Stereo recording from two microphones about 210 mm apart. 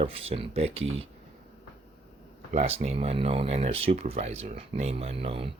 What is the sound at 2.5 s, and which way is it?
Speech, 30° right (ahead or behind).